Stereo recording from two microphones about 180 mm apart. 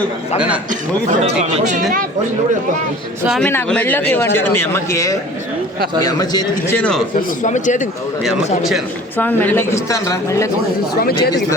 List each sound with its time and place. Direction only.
1.2 s speech: 35° right (ahead or behind)
3.2 s a man's voice: centre (ahead or behind); by 6.7 s 20° left (ahead or behind)
6.7 s speech: 5° left (ahead or behind)
7.2 s speech: 45° left (ahead or behind)
9.1 s speech: 10° left (ahead or behind)
11.0 s speech: 60° left (ahead or behind)